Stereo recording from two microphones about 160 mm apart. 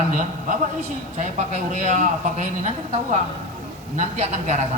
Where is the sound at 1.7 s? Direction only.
55° right (ahead or behind).